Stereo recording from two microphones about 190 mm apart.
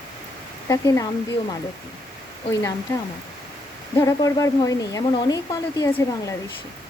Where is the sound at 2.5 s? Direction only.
15° left (ahead or behind).